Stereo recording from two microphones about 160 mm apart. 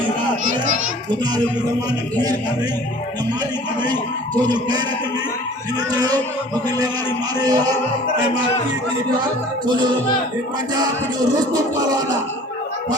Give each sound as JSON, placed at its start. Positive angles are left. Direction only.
{"t": 4.4, "sound": "a man's voice", "side_deg": -25}
{"t": 5.9, "sound": "a man's voice", "side_deg": -25}